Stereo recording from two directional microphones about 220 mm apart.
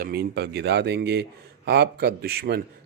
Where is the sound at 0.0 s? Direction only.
45° right (ahead or behind).